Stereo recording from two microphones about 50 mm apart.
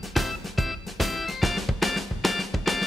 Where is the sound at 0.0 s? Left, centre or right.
Centre.